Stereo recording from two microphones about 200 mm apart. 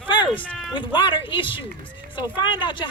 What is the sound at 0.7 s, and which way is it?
Speech, 25° left (ahead or behind).